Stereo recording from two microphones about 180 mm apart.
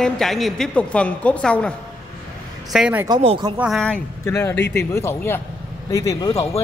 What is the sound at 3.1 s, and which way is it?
Speech, 30° right (ahead or behind).